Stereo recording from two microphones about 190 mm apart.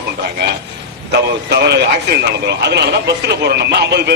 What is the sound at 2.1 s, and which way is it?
Speech, 60° right (ahead or behind).